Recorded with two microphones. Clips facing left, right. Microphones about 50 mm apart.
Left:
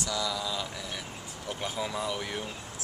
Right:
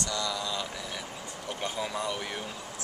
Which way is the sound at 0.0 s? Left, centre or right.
Centre.